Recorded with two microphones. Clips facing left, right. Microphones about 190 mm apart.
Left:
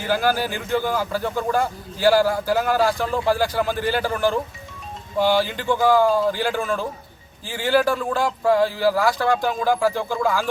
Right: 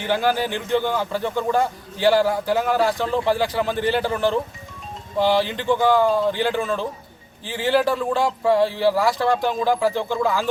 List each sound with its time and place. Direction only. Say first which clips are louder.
0.0 s a man's voice: even; centre (ahead or behind)